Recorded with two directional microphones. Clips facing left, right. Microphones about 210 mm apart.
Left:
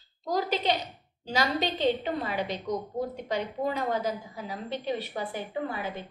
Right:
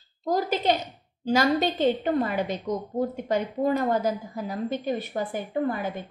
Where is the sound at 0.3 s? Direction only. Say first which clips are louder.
Right 4 dB; 45° right (ahead or behind).